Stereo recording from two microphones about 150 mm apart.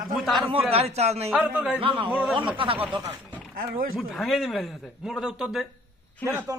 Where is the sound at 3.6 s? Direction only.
75° right (ahead or behind).